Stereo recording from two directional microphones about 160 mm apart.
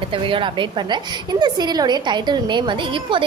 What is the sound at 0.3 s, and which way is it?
A woman's voice, 30° right (ahead or behind).